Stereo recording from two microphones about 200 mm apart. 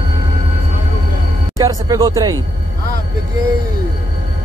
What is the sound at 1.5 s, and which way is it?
Speech, 15° right (ahead or behind).